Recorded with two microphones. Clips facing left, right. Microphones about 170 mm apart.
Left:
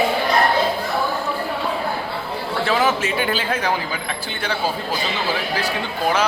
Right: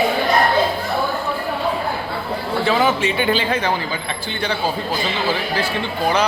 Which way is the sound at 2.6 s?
Centre (ahead or behind).